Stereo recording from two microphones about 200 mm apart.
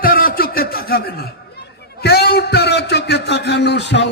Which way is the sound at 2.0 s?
55° left (ahead or behind).